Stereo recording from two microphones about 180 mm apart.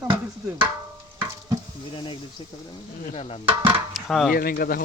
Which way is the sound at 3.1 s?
35° left (ahead or behind).